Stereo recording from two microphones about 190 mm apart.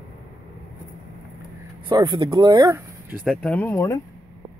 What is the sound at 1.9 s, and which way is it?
Speech, 25° right (ahead or behind).